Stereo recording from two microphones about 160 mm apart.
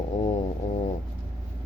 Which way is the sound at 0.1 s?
40° left (ahead or behind).